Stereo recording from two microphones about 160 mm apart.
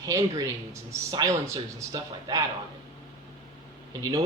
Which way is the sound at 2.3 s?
25° right (ahead or behind).